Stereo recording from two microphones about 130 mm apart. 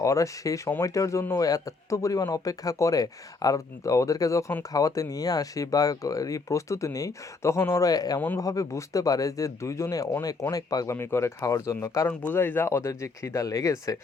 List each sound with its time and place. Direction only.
0.0 s speech: 25° left (ahead or behind)